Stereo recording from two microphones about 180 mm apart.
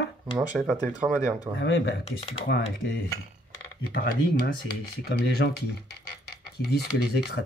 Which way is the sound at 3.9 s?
55° left (ahead or behind).